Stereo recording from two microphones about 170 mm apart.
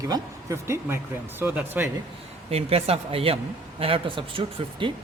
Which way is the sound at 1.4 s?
10° right (ahead or behind).